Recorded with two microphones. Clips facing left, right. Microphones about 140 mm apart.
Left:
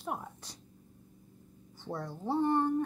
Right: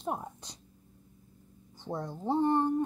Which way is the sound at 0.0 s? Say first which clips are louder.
Right 3 dB; 20° right (ahead or behind).